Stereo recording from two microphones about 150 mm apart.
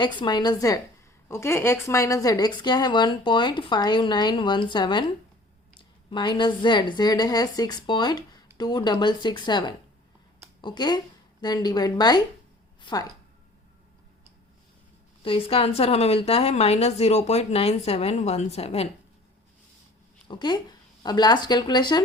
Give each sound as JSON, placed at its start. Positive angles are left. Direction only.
{"t": 0.0, "sound": "a woman's voice", "side_deg": 30}
{"t": 6.1, "sound": "a woman's voice", "side_deg": 30}
{"t": 15.2, "sound": "a woman's voice", "side_deg": 35}
{"t": 20.2, "sound": "speech", "side_deg": 30}